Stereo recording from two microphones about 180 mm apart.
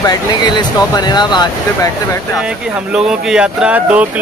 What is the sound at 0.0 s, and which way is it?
Speech, 20° left (ahead or behind).